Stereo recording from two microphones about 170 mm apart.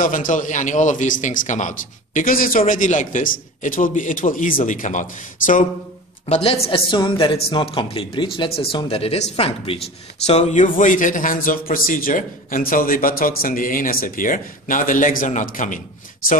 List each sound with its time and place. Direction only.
0.0 s a man's voice: 50° left (ahead or behind)
6.2 s a man's voice: 35° left (ahead or behind)